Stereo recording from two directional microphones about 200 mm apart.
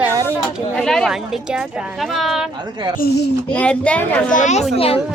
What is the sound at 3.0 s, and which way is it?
Speech, 45° left (ahead or behind).